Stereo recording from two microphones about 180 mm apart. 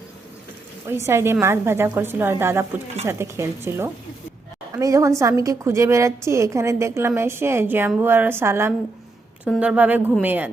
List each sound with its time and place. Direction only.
0.9 s a woman's voice: 15° right (ahead or behind)